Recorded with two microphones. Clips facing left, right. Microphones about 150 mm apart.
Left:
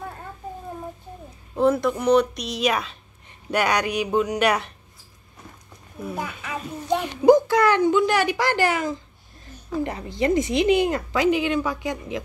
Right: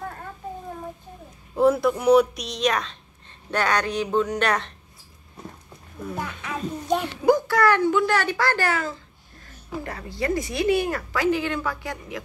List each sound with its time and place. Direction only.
1.5 s a woman's voice: 5° right (ahead or behind)
6.0 s a child's voice: 5° left (ahead or behind)
7.2 s speech: 20° left (ahead or behind)